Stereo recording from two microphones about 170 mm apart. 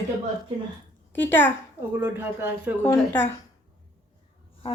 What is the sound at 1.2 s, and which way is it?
Speech, 10° left (ahead or behind).